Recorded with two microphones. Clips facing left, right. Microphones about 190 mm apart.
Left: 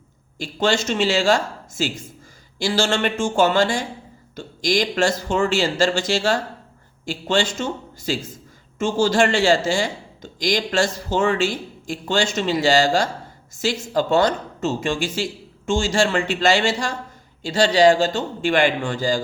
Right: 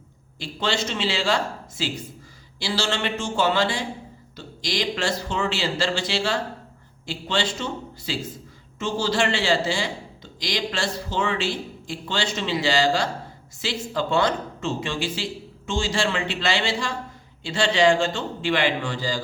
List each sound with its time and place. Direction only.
0.3 s speech: 45° left (ahead or behind)